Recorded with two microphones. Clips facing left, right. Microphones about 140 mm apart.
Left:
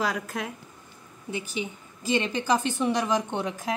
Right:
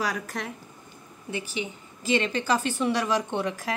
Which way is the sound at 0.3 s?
5° left (ahead or behind).